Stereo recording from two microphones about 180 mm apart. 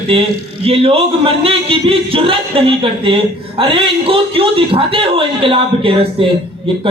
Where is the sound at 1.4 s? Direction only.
30° right (ahead or behind).